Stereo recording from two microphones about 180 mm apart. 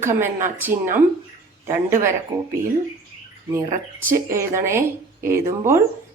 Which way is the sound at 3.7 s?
50° right (ahead or behind).